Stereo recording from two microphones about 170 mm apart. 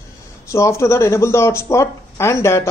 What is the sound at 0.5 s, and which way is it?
A man's voice, 15° left (ahead or behind).